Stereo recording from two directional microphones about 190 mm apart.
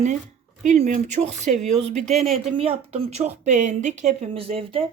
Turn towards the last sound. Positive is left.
turn(degrees=-30)  # may be behind; listen again after turning